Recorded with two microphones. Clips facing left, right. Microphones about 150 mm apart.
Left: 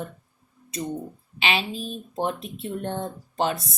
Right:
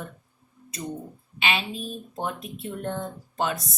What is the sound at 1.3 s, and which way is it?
Speech, 30° left (ahead or behind).